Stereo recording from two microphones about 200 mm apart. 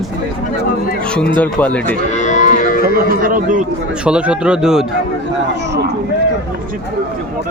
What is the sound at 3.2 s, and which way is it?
Speech, 40° right (ahead or behind).